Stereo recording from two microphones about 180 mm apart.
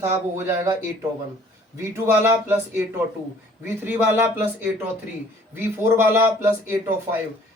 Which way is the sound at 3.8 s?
10° right (ahead or behind).